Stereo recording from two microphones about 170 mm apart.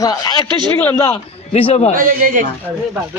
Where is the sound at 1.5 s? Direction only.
35° left (ahead or behind).